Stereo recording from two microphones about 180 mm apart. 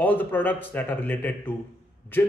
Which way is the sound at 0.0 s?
10° left (ahead or behind).